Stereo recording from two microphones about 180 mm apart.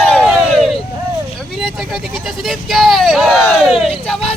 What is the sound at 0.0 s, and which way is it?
Vehicle, 5° left (ahead or behind).